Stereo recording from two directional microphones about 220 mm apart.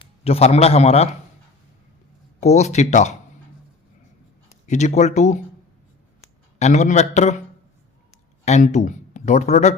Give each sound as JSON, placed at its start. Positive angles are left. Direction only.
{"t": 0.3, "sound": "a man's voice", "side_deg": 30}
{"t": 2.4, "sound": "speech", "side_deg": 30}
{"t": 4.6, "sound": "speech", "side_deg": 30}
{"t": 8.4, "sound": "speech", "side_deg": 30}